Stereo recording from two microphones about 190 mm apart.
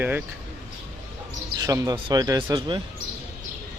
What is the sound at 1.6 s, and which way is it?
A man's voice, 20° right (ahead or behind).